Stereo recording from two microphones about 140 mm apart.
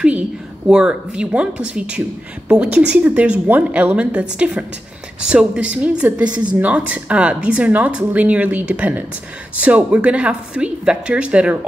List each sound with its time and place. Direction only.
0.7 s speech: 5° right (ahead or behind)